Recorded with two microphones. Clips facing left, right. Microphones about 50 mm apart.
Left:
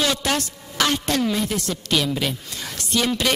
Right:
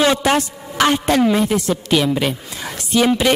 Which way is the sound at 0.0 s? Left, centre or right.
Right.